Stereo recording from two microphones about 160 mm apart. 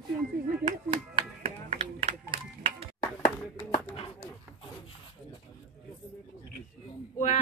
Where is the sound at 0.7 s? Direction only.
35° right (ahead or behind).